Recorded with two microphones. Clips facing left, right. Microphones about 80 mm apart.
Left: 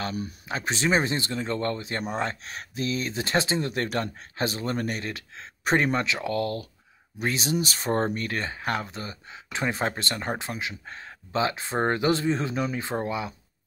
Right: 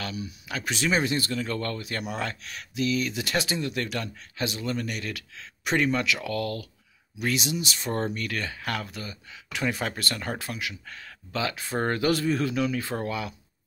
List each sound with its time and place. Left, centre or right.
0.5 s speech: left